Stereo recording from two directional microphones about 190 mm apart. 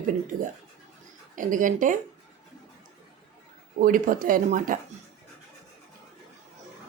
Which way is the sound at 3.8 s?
45° right (ahead or behind).